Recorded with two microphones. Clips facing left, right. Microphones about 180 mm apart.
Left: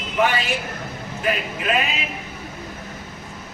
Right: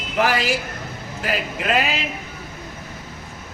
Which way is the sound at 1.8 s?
85° right.